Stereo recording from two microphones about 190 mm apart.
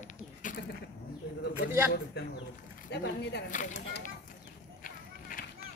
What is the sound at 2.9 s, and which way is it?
Speech, 60° left (ahead or behind).